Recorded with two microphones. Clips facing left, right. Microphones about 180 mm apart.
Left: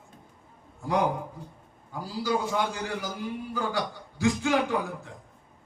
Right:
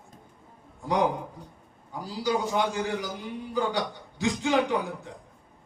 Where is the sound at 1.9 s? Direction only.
20° right (ahead or behind).